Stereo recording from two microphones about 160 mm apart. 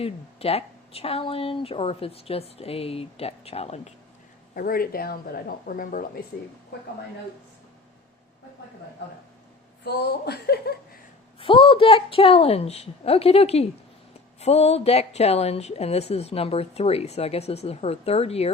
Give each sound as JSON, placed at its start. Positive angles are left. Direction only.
{"t": 0.0, "sound": "speech", "side_deg": 40}
{"t": 4.5, "sound": "speech", "side_deg": 65}
{"t": 9.8, "sound": "speech", "side_deg": 90}
{"t": 11.3, "sound": "speech", "side_deg": 35}